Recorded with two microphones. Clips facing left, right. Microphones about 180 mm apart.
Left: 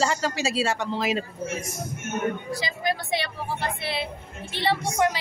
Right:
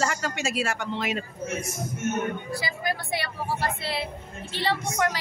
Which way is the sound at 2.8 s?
20° left (ahead or behind).